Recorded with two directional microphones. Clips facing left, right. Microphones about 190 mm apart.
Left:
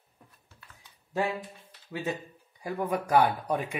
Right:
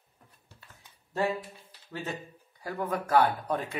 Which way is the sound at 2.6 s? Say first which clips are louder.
Left 2 dB; 15° left (ahead or behind).